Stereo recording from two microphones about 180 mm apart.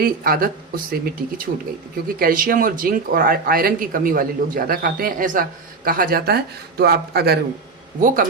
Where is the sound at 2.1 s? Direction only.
50° right (ahead or behind).